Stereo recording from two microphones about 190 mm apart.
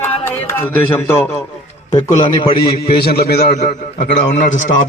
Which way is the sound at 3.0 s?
55° left (ahead or behind).